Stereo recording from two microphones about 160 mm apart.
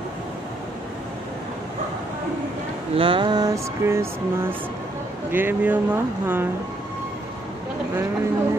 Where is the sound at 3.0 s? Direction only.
30° right (ahead or behind); by 4.5 s 15° right (ahead or behind).